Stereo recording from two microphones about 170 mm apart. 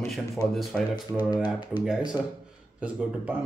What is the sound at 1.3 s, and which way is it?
Speech, 25° left (ahead or behind).